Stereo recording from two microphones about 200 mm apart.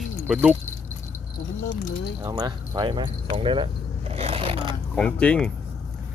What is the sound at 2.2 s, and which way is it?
Speech, 20° right (ahead or behind).